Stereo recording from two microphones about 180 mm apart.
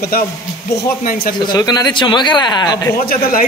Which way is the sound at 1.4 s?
25° left (ahead or behind).